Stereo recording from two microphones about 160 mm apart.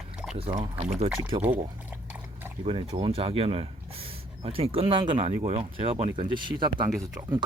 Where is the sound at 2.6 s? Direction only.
35° right (ahead or behind).